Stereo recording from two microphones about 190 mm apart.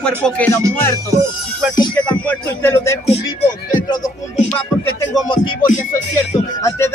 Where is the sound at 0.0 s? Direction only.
5° left (ahead or behind).